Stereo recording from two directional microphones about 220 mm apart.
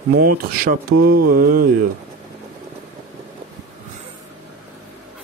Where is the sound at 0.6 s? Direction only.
45° right (ahead or behind).